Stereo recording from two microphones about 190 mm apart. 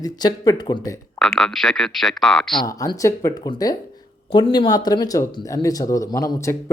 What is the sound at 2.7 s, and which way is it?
Speech, 20° left (ahead or behind).